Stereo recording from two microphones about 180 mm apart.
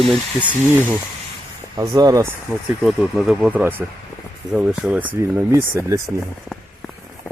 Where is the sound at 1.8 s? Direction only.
20° right (ahead or behind).